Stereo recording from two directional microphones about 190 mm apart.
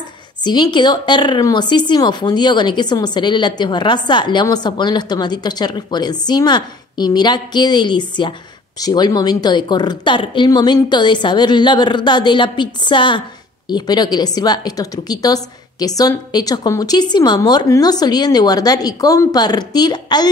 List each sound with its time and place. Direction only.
0.4 s speech: 20° left (ahead or behind)